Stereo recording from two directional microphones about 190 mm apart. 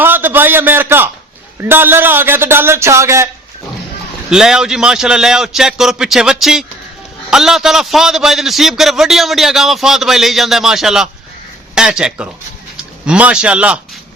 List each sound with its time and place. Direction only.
0.0 s a sound: 10° right (ahead or behind)
1.6 s a man's voice: 10° right (ahead or behind)
4.3 s a man's voice: 5° right (ahead or behind)